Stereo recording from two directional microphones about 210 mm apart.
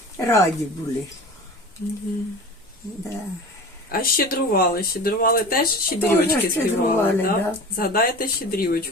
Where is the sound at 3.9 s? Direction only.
45° left (ahead or behind).